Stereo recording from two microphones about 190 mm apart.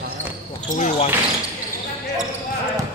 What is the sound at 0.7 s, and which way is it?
Speech, 40° left (ahead or behind).